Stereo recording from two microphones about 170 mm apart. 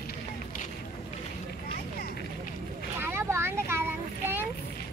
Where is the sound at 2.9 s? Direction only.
15° right (ahead or behind).